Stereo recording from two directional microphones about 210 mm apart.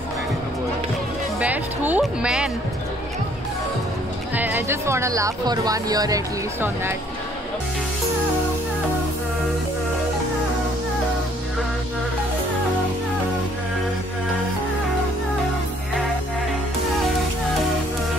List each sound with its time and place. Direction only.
1.4 s speech: 5° right (ahead or behind)
4.4 s speech: 10° right (ahead or behind)